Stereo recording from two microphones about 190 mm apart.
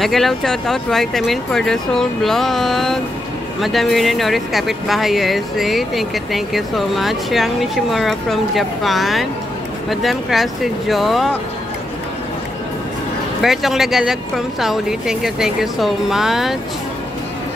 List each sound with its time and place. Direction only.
0.0 s speech: centre (ahead or behind)
13.4 s speech: centre (ahead or behind)